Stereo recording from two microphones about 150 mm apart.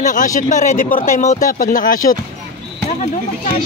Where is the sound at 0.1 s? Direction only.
60° left (ahead or behind).